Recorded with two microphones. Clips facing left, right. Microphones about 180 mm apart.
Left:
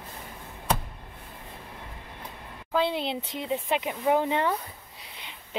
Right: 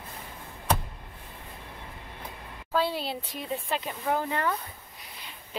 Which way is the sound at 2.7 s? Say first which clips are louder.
Left 2 dB; 20° left (ahead or behind).